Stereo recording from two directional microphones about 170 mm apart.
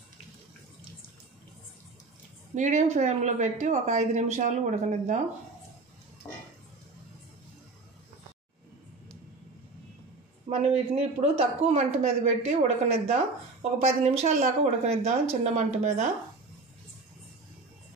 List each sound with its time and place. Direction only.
2.5 s a woman's voice: 45° right (ahead or behind)
10.5 s speech: 40° right (ahead or behind)